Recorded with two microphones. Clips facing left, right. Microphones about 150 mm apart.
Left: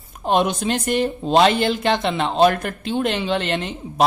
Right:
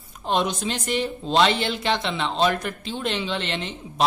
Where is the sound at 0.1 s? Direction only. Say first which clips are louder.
Left 5 dB; 50° left (ahead or behind).